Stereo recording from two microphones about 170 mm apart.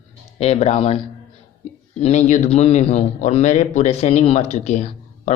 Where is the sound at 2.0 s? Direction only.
40° left (ahead or behind).